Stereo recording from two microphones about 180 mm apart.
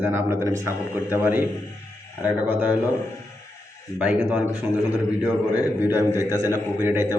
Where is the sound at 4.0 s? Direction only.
5° right (ahead or behind).